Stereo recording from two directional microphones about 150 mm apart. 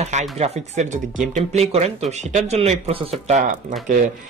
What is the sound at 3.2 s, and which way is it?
Speech, 55° right (ahead or behind).